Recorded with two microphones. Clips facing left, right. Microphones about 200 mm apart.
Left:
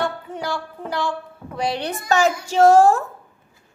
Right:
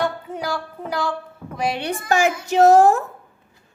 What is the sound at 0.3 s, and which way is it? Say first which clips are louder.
Speech: right 1 dB; 5° right (ahead or behind).